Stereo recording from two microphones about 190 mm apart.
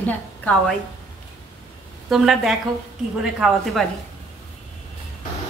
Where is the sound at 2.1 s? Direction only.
Centre (ahead or behind).